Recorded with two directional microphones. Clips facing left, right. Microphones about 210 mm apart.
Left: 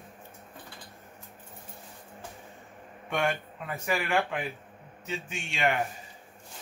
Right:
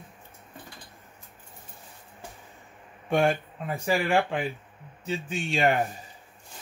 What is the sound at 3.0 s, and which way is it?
Speech, 30° right (ahead or behind).